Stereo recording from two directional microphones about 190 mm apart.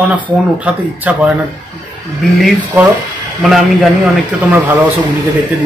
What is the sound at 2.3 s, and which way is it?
Speech, 5° right (ahead or behind).